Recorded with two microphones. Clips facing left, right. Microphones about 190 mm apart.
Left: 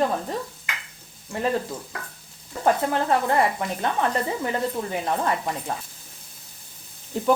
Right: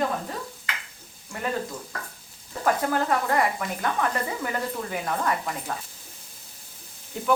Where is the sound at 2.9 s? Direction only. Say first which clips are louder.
Left 2 dB; 25° left (ahead or behind).